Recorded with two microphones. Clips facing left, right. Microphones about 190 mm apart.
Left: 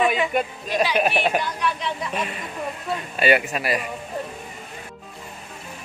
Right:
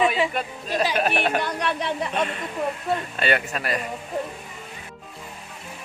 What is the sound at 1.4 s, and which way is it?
Speech, 60° right (ahead or behind).